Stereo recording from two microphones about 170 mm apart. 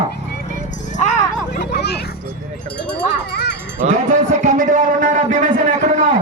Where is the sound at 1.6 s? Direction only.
75° left (ahead or behind).